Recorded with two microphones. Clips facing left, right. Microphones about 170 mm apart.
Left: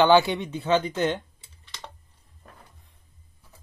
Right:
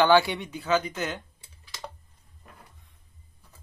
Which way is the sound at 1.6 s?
5° right (ahead or behind).